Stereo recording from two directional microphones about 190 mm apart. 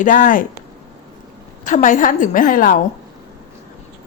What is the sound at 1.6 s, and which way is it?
A woman's voice, 40° left (ahead or behind).